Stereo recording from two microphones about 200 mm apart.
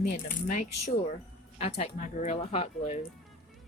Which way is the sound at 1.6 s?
35° left (ahead or behind).